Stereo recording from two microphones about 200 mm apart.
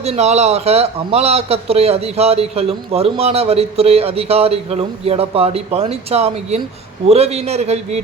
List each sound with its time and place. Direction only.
0.0 s a man's voice: 30° right (ahead or behind)